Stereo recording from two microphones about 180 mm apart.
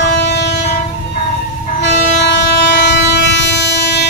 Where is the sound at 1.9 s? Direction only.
75° left (ahead or behind).